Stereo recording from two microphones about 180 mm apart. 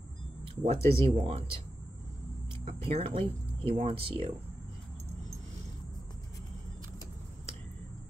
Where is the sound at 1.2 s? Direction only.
35° right (ahead or behind).